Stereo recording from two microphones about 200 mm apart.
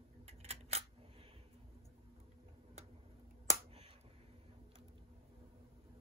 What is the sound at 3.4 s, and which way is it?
Finger snapping, 30° right (ahead or behind).